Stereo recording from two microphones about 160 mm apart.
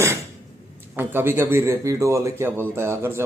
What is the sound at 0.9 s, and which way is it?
Speech, 15° right (ahead or behind).